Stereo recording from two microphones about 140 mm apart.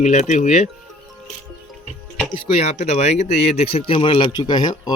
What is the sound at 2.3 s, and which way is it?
Speech, 40° left (ahead or behind).